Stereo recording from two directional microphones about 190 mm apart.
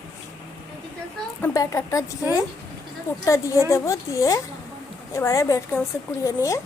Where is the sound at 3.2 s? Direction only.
15° left (ahead or behind).